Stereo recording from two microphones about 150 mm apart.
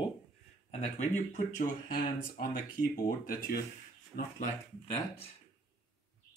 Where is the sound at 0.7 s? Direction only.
50° left (ahead or behind); by 3.6 s 70° left (ahead or behind).